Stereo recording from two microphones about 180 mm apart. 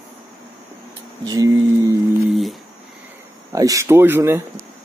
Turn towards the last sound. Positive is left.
turn(degrees=-10)  # may be behind; listen again after turning